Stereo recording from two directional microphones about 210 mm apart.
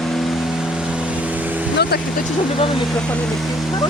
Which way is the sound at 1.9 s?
50° left (ahead or behind).